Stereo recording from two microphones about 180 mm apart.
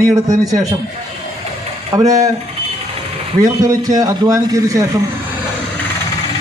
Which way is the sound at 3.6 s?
20° right (ahead or behind).